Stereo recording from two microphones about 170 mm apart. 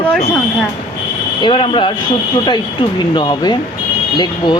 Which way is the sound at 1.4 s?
30° left (ahead or behind).